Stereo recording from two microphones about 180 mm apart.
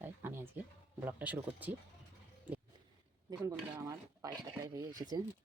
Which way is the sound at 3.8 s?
20° right (ahead or behind).